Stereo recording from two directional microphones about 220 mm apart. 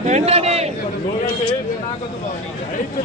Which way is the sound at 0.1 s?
30° right (ahead or behind).